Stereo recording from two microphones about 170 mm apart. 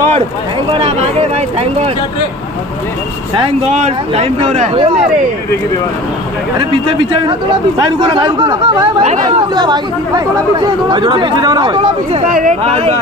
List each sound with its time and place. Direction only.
0.7 s speech: 40° right (ahead or behind)
3.3 s speech: 40° right (ahead or behind)
6.7 s speech: 30° right (ahead or behind)
9.0 s speech: 40° right (ahead or behind)
9.6 s speech: 25° right (ahead or behind)
12.3 s speech: 50° right (ahead or behind)
12.6 s speech: 35° right (ahead or behind)